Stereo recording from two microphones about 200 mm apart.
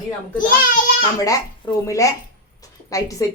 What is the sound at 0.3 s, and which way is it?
Speech, 45° left (ahead or behind).